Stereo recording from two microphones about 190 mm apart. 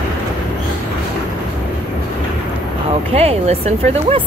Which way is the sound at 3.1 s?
35° right (ahead or behind).